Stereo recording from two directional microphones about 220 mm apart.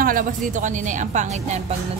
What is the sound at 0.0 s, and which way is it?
A woman's voice, 40° right (ahead or behind).